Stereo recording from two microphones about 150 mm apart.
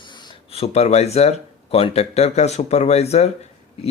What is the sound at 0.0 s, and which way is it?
Speech, 30° left (ahead or behind).